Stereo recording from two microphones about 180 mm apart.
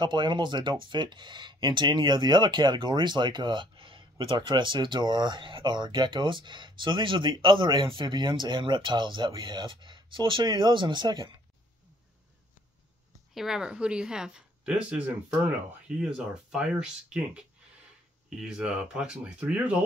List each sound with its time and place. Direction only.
0.0 s speech: 25° right (ahead or behind)
13.3 s speech: centre (ahead or behind)